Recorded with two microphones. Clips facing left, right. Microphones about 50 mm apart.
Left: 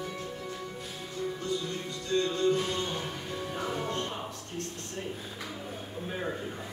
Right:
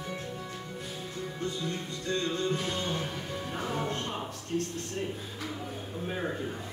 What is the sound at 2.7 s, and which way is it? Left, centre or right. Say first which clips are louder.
Music: even; centre.